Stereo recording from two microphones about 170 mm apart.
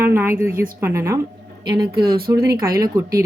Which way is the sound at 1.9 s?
65° right (ahead or behind).